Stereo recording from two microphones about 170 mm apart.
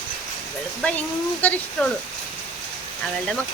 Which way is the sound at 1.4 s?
10° left (ahead or behind).